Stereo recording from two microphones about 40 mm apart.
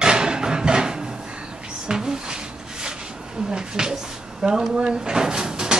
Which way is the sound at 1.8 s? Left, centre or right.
Centre.